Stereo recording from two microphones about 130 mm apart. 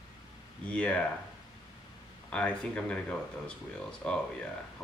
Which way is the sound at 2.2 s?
10° left (ahead or behind).